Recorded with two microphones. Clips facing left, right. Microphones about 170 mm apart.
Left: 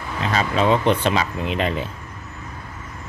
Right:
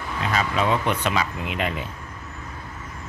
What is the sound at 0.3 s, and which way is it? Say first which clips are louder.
Speech: left 4 dB; 30° left (ahead or behind).